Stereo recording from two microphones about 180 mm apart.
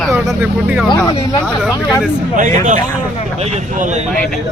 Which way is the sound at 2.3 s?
45° right (ahead or behind).